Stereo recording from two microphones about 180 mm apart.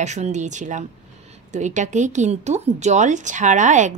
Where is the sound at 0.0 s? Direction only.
40° right (ahead or behind).